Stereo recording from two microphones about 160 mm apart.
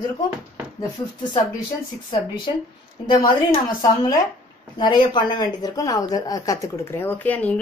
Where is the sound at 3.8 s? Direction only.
25° left (ahead or behind); by 7.6 s 10° left (ahead or behind).